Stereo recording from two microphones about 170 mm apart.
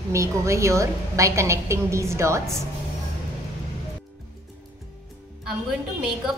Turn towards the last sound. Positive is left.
turn(degrees=-5)  # may be behind; listen again after turning